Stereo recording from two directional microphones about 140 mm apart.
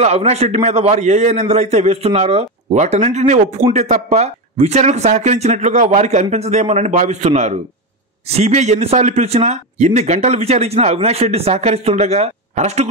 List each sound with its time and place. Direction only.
0.0 s a man's voice: 50° right (ahead or behind)